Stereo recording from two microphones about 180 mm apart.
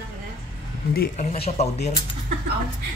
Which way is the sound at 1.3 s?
35° left (ahead or behind).